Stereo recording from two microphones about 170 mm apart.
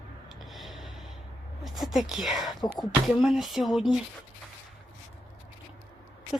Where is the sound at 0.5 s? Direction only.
Centre (ahead or behind).